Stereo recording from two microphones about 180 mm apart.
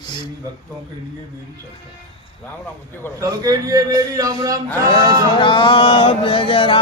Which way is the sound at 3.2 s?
20° right (ahead or behind).